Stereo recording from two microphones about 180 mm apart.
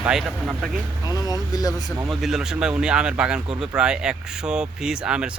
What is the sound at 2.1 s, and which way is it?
Speech, centre (ahead or behind).